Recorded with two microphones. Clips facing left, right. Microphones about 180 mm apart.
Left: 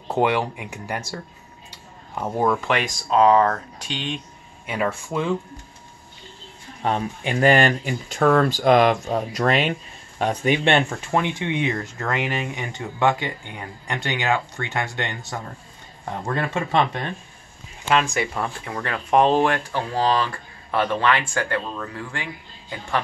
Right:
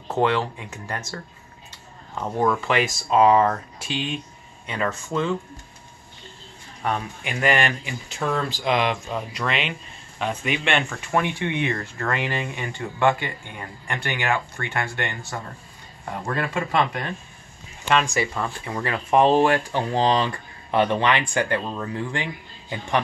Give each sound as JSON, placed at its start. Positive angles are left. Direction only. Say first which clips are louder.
{"t": 0.1, "sound": "speech", "louder": "left 1 dB", "side_deg": 15}
{"t": 4.6, "sound": "speech", "louder": "left 2 dB", "side_deg": 10}
{"t": 6.8, "sound": "speech", "louder": "left 3 dB", "side_deg": 30}
{"t": 17.8, "sound": "speech", "louder": "left 1 dB", "side_deg": 0}
{"t": 19.7, "sound": "speech", "louder": "right 1 dB", "side_deg": -20}